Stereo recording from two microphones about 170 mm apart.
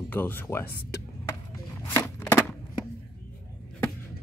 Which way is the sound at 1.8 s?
20° left (ahead or behind).